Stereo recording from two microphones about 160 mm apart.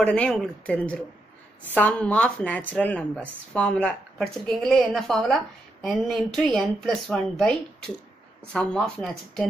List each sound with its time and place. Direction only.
0.0 s speech: 5° left (ahead or behind)